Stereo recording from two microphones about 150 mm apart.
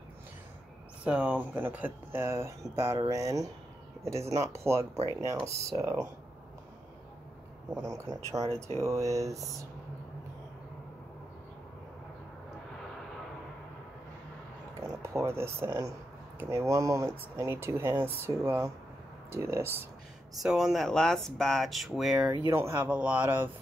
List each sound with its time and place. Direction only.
1.0 s speech: 10° right (ahead or behind)
7.7 s speech: 20° right (ahead or behind)
14.8 s speech: 20° right (ahead or behind)
20.4 s speech: 5° right (ahead or behind)
22.5 s speech: 15° right (ahead or behind)